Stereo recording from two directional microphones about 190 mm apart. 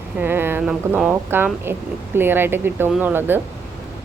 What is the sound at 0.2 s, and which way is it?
Speech, 10° right (ahead or behind).